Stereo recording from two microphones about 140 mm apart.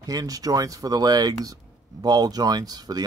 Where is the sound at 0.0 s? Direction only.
25° right (ahead or behind).